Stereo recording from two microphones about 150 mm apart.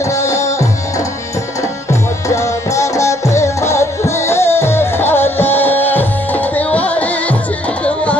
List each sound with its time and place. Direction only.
0.0 s music: 20° left (ahead or behind)
1.6 s tabla: 20° left (ahead or behind)
7.8 s music: 10° left (ahead or behind)